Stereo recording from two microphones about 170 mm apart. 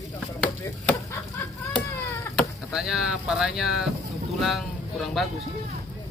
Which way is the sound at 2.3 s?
Centre (ahead or behind).